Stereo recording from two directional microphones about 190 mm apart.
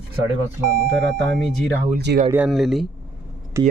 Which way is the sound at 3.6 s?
20° right (ahead or behind).